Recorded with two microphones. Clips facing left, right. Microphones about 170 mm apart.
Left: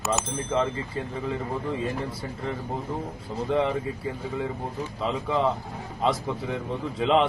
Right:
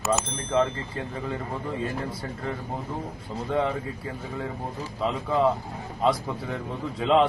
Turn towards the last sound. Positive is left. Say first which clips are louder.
# right 1 dB
turn(degrees=0)  # may be behind; listen again after turning